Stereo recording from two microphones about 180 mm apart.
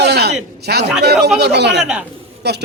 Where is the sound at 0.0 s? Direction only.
65° right (ahead or behind).